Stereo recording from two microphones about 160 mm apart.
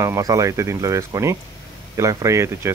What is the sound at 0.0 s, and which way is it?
Speech, 20° right (ahead or behind).